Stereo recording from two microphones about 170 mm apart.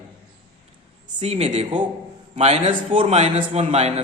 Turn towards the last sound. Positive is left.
turn(degrees=-40)  # may be behind; listen again after turning